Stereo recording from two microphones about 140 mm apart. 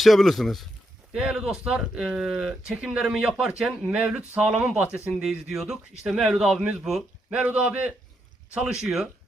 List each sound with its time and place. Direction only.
0.0 s a man's voice: centre (ahead or behind)